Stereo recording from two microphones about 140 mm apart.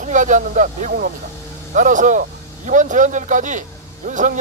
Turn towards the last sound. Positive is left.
turn(degrees=-65)  # may be behind; listen again after turning